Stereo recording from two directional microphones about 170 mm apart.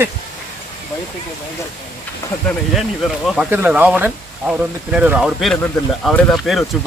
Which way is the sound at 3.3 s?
5° right (ahead or behind).